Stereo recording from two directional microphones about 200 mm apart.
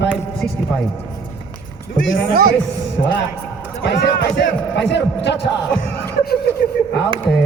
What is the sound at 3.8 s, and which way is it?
Speech, 60° left (ahead or behind).